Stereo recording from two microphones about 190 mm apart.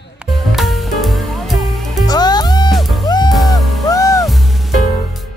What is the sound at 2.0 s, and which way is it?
Music, 20° left (ahead or behind).